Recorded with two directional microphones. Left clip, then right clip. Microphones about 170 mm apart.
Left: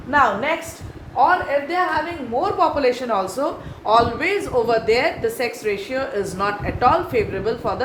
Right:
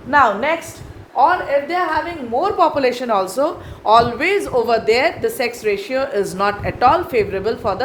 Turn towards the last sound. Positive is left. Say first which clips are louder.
# right 3 dB
turn(degrees=-55)  # may be behind; listen again after turning